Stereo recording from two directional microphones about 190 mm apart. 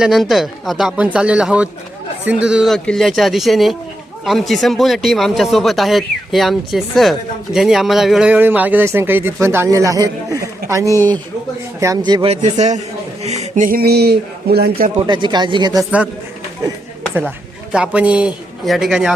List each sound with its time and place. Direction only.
0.0 s speech: centre (ahead or behind)
10.9 s speech: 10° left (ahead or behind)
11.8 s speech: 20° right (ahead or behind)
12.3 s a man's voice: 35° right (ahead or behind); by 14.8 s 55° right (ahead or behind)
14.9 s speech: 25° right (ahead or behind)
15.8 s speech: 5° right (ahead or behind)
17.2 s a man's voice: 5° right (ahead or behind)